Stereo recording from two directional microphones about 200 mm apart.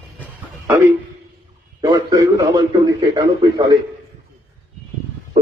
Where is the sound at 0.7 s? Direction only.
15° right (ahead or behind).